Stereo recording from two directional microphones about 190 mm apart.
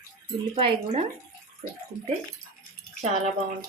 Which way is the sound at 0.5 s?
30° right (ahead or behind).